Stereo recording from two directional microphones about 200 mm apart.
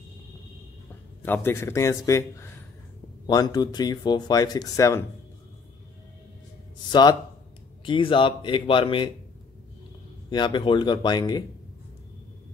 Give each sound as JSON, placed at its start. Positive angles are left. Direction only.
{"t": 1.2, "sound": "a man's voice", "side_deg": 10}
{"t": 6.9, "sound": "speech", "side_deg": 20}
{"t": 10.3, "sound": "speech", "side_deg": 25}